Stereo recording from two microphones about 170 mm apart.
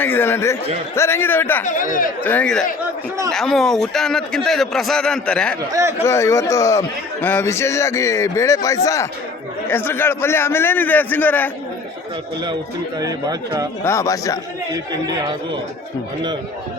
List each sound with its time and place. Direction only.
0.0 s a man's voice: 10° left (ahead or behind)
1.6 s speech: 50° left (ahead or behind)
2.2 s a man's voice: 10° left (ahead or behind)
13.0 s speech: 20° right (ahead or behind)
13.8 s speech: 15° left (ahead or behind)